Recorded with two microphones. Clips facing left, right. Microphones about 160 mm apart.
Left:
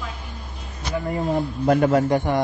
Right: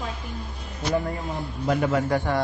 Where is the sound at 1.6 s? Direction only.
45° left (ahead or behind).